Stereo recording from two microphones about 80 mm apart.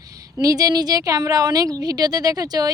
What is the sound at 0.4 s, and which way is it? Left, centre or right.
Speech, right.